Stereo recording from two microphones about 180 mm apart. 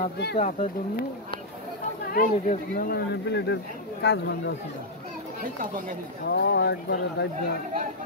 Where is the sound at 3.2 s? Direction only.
75° left (ahead or behind).